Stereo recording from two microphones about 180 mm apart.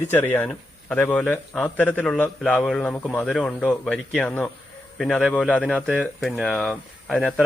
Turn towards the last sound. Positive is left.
turn(degrees=5)  # may be behind; listen again after turning